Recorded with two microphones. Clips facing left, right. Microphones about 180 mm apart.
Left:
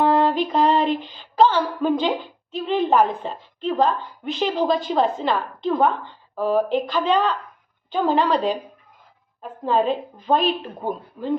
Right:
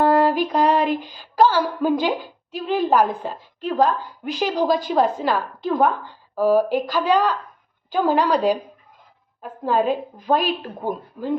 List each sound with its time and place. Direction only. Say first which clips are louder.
0.0 s music: right 1 dB; 5° right (ahead or behind)
1.1 s a woman's voice: even; 5° right (ahead or behind)